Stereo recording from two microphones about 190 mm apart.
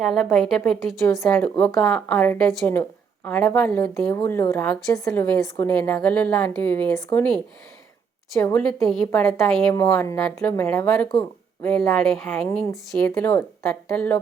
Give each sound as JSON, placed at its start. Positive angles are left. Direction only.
{"t": 0.0, "sound": "a woman's voice", "side_deg": 0}
{"t": 8.4, "sound": "a woman's voice", "side_deg": 15}
{"t": 8.8, "sound": "a woman's voice", "side_deg": 0}
{"t": 9.7, "sound": "a woman's voice", "side_deg": 15}